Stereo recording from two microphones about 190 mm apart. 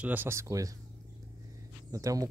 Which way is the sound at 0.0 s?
10° right (ahead or behind).